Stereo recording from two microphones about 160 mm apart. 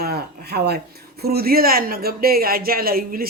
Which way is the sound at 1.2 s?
75° right (ahead or behind).